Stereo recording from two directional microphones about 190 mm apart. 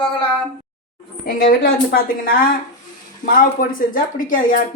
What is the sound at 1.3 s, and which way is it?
Speech, 50° left (ahead or behind).